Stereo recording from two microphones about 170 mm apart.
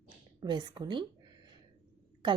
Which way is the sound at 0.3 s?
25° right (ahead or behind).